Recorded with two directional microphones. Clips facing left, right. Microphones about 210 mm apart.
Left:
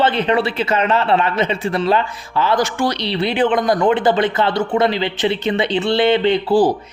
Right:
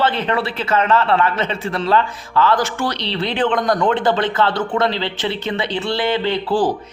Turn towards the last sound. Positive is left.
turn(degrees=10)  # may be behind; listen again after turning